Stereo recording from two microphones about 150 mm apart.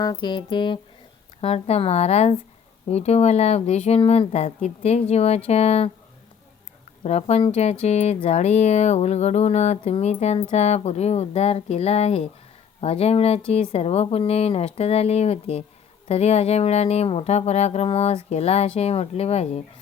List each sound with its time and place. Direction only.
0.0 s speech: 30° left (ahead or behind)
1.4 s speech: 45° left (ahead or behind)
7.0 s speech: 45° left (ahead or behind)